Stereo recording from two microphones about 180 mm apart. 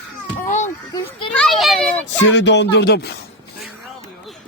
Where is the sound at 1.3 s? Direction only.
5° left (ahead or behind).